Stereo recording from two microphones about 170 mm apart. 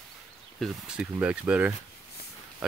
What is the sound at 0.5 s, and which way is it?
Speech, centre (ahead or behind).